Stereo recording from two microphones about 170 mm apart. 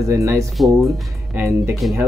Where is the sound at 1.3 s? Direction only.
15° right (ahead or behind).